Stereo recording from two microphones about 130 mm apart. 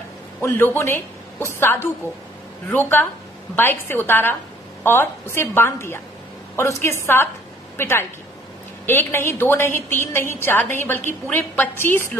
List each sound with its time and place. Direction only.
0.4 s a woman's voice: 20° left (ahead or behind)